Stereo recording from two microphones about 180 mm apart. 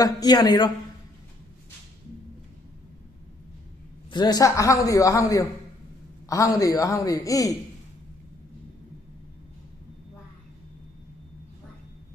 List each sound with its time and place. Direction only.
0.0 s a man's voice: 20° left (ahead or behind)
4.1 s a man's voice: 25° left (ahead or behind)